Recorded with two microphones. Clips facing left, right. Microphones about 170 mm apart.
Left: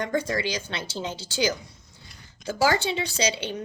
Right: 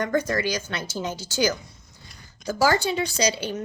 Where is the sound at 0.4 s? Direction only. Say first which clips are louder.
Right 2 dB; 25° left (ahead or behind).